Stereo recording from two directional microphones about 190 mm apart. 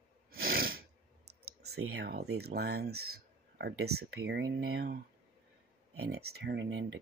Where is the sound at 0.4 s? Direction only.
50° right (ahead or behind).